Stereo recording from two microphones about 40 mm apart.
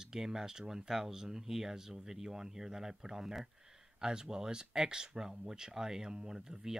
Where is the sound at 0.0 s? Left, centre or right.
Centre.